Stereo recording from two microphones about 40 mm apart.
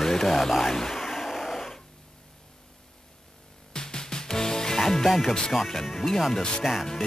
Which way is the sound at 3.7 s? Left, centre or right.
Centre.